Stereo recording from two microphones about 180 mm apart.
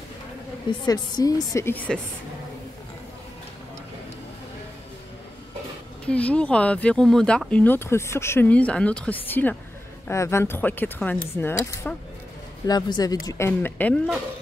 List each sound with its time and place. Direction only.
0.7 s speech: 20° left (ahead or behind)
6.0 s speech: 5° left (ahead or behind)